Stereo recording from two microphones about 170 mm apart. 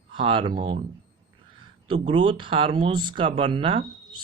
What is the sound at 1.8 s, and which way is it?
Speech, 30° right (ahead or behind).